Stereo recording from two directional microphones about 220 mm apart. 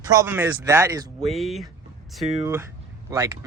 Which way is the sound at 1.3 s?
Centre (ahead or behind).